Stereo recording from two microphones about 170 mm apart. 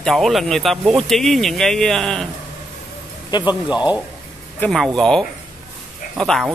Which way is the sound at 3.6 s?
5° right (ahead or behind).